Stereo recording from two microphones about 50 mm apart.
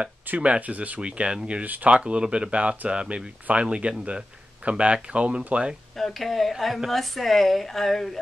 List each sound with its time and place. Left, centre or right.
0.0 s speech: right
1.6 s speech: right
2.0 s speech: right
5.9 s speech: centre